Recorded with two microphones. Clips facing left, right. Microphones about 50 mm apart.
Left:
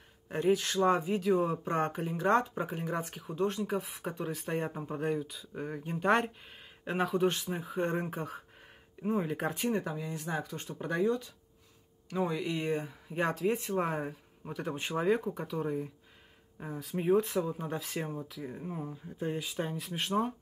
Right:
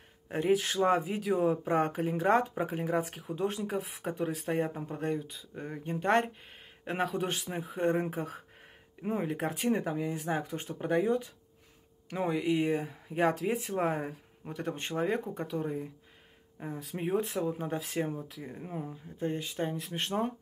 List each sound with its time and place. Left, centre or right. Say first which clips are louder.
0.3 s speech: right 1 dB; centre
9.7 s speech: right 3 dB; centre
12.3 s speech: right 4 dB; centre
18.6 s speech: right 2 dB; centre
18.9 s speech: right 3 dB; centre